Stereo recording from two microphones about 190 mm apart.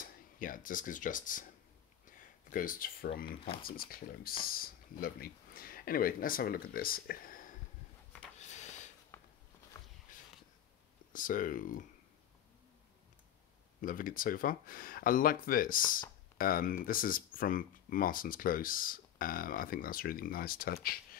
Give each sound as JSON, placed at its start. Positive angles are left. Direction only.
{"t": 0.0, "sound": "speech", "side_deg": 45}
{"t": 2.0, "sound": "a sound", "side_deg": 45}
{"t": 3.6, "sound": "speech", "side_deg": 50}
{"t": 8.4, "sound": "a sound", "side_deg": 40}
{"t": 11.1, "sound": "speech", "side_deg": 45}
{"t": 13.7, "sound": "speech", "side_deg": 45}